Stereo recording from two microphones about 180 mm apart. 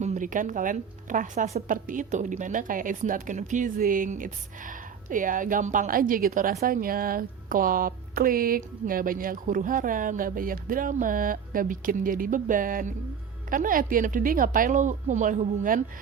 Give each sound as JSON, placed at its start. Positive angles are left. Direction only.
{"t": 0.0, "sound": "a woman's voice", "side_deg": -45}